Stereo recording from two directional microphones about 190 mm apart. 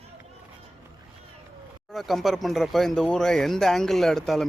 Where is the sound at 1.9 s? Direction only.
Centre (ahead or behind).